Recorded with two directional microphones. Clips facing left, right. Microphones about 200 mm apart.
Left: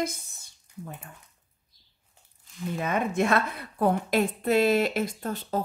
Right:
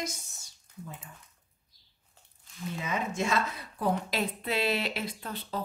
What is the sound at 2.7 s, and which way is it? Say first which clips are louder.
A woman's voice: left 6 dB; 55° left (ahead or behind).